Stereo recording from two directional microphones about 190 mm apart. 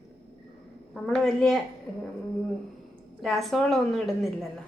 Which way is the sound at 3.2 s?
Centre (ahead or behind).